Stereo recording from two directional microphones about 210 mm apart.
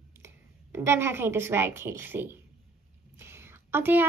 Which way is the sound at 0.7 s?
10° right (ahead or behind).